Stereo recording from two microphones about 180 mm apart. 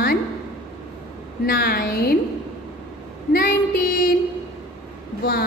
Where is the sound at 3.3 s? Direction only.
55° left (ahead or behind).